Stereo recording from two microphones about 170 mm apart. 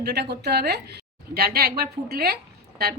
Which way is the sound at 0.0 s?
75° right (ahead or behind).